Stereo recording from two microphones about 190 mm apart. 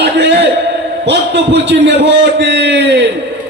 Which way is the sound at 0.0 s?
60° right (ahead or behind).